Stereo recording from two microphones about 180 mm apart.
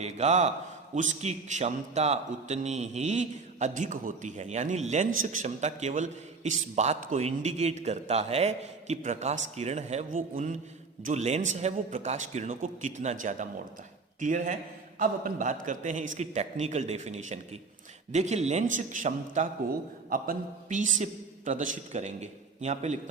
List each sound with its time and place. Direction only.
0.0 s a man's voice: 35° right (ahead or behind)